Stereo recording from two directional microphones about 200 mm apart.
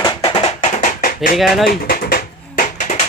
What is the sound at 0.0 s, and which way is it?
Music, 25° left (ahead or behind).